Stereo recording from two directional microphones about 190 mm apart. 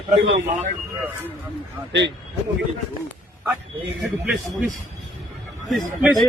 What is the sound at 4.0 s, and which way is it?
Speech, centre (ahead or behind).